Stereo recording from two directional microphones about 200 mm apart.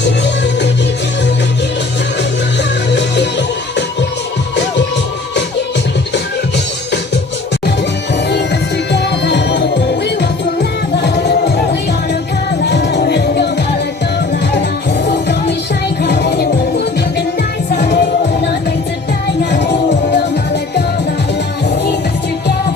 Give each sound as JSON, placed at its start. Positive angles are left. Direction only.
{"t": 2.9, "sound": "music", "side_deg": 60}
{"t": 8.9, "sound": "music", "side_deg": 60}
{"t": 15.0, "sound": "music", "side_deg": 55}
{"t": 19.4, "sound": "music", "side_deg": 60}